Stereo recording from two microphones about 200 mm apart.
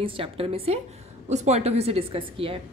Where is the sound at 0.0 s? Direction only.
25° right (ahead or behind).